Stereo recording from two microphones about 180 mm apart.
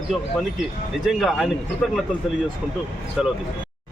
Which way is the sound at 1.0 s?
Centre (ahead or behind).